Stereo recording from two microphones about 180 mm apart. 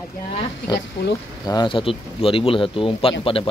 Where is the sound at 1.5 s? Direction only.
25° left (ahead or behind).